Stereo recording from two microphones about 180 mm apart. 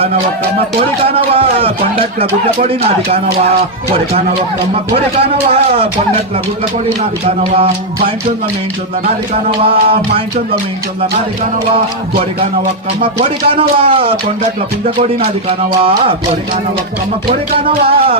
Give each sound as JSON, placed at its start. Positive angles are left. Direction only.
{"t": 1.0, "sound": "speech", "side_deg": -30}
{"t": 4.7, "sound": "speech", "side_deg": -35}
{"t": 7.0, "sound": "speech", "side_deg": -35}
{"t": 9.6, "sound": "speech", "side_deg": -30}
{"t": 13.0, "sound": "speech", "side_deg": -30}
{"t": 17.7, "sound": "speech", "side_deg": -30}